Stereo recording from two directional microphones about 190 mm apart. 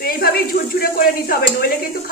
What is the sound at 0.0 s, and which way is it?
A woman's voice, 55° left (ahead or behind).